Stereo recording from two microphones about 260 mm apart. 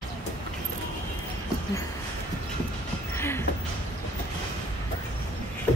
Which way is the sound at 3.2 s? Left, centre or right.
Centre.